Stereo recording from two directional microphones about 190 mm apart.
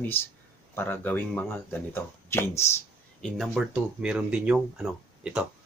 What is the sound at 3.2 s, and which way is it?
Speech, centre (ahead or behind).